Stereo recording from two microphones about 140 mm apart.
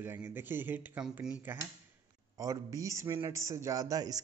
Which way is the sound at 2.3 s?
25° right (ahead or behind).